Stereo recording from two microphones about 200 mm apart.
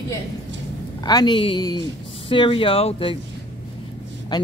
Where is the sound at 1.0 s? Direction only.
20° left (ahead or behind).